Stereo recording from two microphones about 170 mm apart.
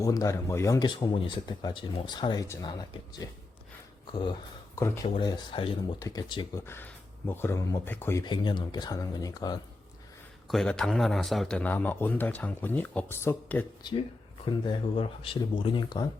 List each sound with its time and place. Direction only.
0.0 s speech: 20° left (ahead or behind)
6.7 s speech: 10° left (ahead or behind)
8.2 s speech: 25° left (ahead or behind)
10.5 s a man's voice: 5° left (ahead or behind)
14.4 s speech: 30° left (ahead or behind)